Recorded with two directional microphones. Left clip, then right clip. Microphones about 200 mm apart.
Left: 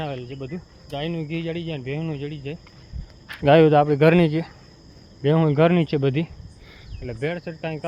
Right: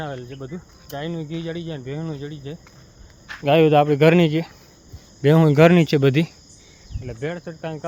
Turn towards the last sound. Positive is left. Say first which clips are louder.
# left 1 dB
turn(degrees=10)  # may be behind; listen again after turning